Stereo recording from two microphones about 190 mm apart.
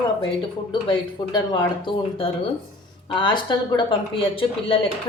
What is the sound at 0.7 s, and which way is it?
A woman's voice, 25° left (ahead or behind).